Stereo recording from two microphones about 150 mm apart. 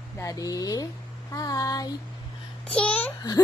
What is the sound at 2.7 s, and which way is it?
Speech, 5° left (ahead or behind).